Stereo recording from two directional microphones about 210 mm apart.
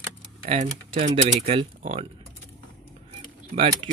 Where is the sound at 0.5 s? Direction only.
35° right (ahead or behind).